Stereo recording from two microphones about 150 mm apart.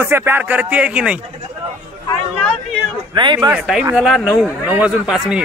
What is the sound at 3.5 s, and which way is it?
A man's voice, 5° right (ahead or behind).